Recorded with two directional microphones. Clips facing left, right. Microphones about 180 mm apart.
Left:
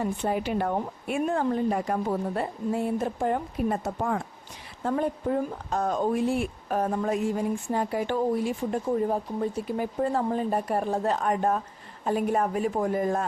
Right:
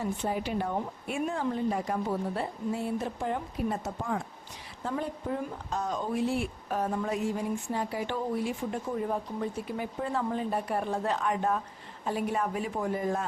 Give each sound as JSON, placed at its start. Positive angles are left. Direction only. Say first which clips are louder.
{"t": 0.0, "sound": "speech", "louder": "left 4 dB", "side_deg": 60}